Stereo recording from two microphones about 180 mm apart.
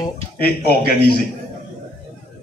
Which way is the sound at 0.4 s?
55° left (ahead or behind).